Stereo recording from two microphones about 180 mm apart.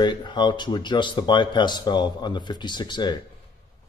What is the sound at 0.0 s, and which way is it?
Speech, 25° left (ahead or behind).